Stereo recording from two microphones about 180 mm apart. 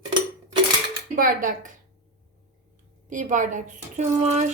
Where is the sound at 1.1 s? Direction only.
50° right (ahead or behind).